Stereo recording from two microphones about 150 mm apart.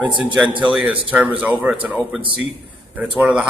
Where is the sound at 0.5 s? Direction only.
10° right (ahead or behind).